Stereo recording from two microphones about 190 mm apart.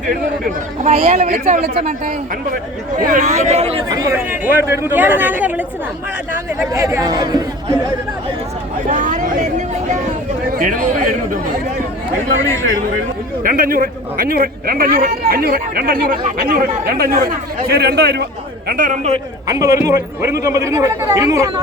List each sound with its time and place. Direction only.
0.8 s a man's voice: 35° right (ahead or behind)
3.8 s speech: 20° right (ahead or behind)
8.9 s a man's voice: 40° right (ahead or behind)
13.4 s a man's voice: 50° right (ahead or behind)
18.7 s a man's voice: 45° right (ahead or behind)
19.5 s speech: 15° right (ahead or behind)